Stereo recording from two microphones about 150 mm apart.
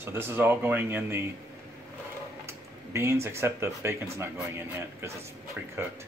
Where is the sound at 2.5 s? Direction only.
20° right (ahead or behind).